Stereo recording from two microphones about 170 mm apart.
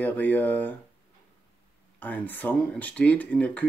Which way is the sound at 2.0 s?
10° left (ahead or behind).